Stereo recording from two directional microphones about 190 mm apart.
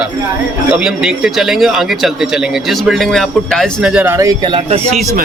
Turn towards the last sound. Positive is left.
turn(degrees=-25)  # may be behind; listen again after turning